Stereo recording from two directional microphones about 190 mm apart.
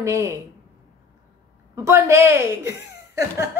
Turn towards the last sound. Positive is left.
turn(degrees=-15)  # may be behind; listen again after turning